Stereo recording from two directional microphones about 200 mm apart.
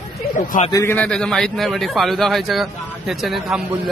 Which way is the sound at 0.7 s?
15° left (ahead or behind).